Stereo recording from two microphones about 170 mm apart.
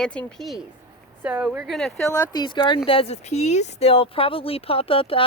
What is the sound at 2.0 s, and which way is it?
Speech, 20° left (ahead or behind).